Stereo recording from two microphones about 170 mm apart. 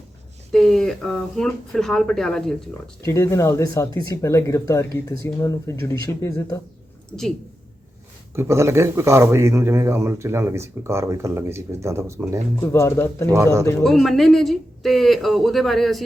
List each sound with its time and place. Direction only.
0.5 s speech: centre (ahead or behind)
3.0 s speech: 15° left (ahead or behind)
8.4 s speech: 15° right (ahead or behind)
12.6 s speech: 15° left (ahead or behind)
13.3 s speech: 15° right (ahead or behind)
13.8 s speech: centre (ahead or behind)